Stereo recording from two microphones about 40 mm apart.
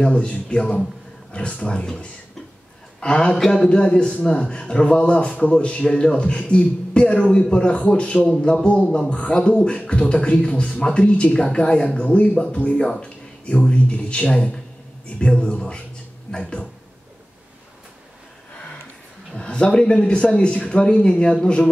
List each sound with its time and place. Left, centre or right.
0.1 s a man's voice: left
3.0 s a man's voice: left
3.3 s speech: centre
3.6 s a man's voice: left
8.6 s speech: left
8.9 s a man's voice: centre
19.3 s a man's voice: left